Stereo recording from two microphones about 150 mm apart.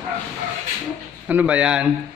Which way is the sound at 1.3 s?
10° right (ahead or behind).